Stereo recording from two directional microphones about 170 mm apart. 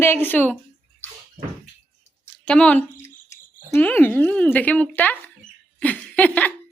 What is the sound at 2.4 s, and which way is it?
Speech, 5° left (ahead or behind).